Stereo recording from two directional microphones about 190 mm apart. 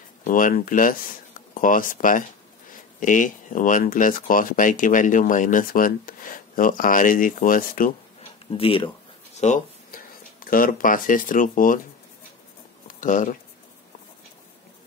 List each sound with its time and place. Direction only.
0.2 s speech: 45° left (ahead or behind)
8.5 s speech: 30° left (ahead or behind); by 11.8 s 45° left (ahead or behind)
12.8 s speech: 40° left (ahead or behind)